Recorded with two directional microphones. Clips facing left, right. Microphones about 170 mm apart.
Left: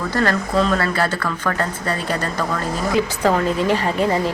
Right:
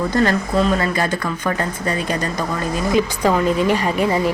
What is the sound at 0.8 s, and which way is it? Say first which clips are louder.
Speech: right 1 dB; 15° right (ahead or behind).